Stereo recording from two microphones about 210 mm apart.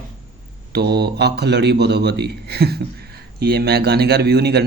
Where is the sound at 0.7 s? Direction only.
50° right (ahead or behind).